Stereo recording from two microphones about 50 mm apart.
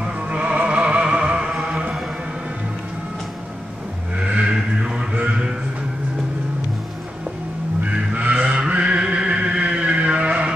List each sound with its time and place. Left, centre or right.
0.0 s music: right
4.2 s vehicle: right
4.6 s a sound: centre
7.8 s vehicle: right
8.5 s music: right